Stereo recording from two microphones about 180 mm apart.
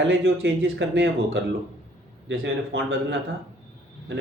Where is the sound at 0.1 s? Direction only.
85° right.